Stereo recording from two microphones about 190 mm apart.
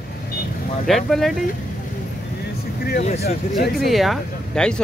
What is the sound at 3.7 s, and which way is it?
Speech, centre (ahead or behind).